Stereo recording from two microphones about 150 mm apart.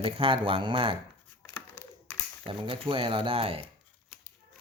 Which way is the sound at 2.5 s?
35° right (ahead or behind).